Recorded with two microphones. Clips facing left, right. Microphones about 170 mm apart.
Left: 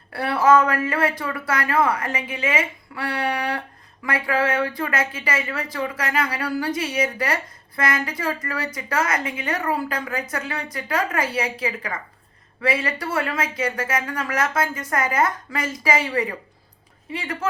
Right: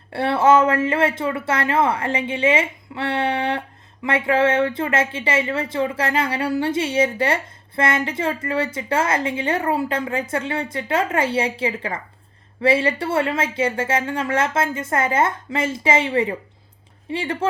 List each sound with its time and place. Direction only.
0.1 s a woman's voice: 25° right (ahead or behind)